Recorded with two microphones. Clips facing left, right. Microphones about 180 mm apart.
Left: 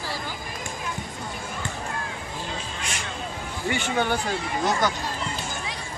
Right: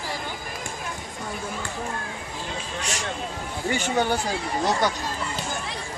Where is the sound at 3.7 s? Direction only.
40° right (ahead or behind).